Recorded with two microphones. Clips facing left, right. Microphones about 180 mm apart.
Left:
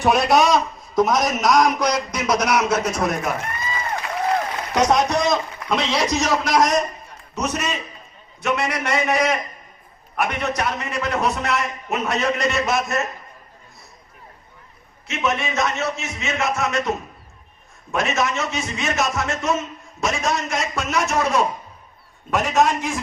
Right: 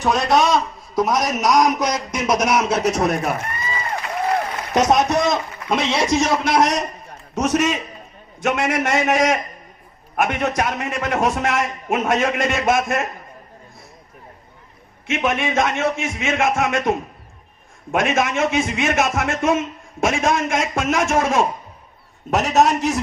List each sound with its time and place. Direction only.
0.0 s a man's voice: 5° left (ahead or behind)
1.0 s a man's voice: 10° right (ahead or behind); by 3.2 s 40° right (ahead or behind)
4.7 s a man's voice: 20° right (ahead or behind)
7.3 s a man's voice: 50° right (ahead or behind)
15.0 s a man's voice: 50° right (ahead or behind)
17.9 s a man's voice: 55° right (ahead or behind)